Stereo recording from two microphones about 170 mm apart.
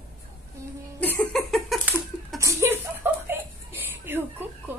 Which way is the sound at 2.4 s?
15° right (ahead or behind).